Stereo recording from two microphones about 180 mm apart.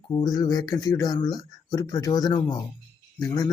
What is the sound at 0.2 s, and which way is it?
Speech, 20° left (ahead or behind).